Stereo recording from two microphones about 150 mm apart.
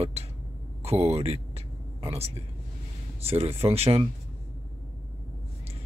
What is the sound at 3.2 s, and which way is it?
Speech, 40° right (ahead or behind).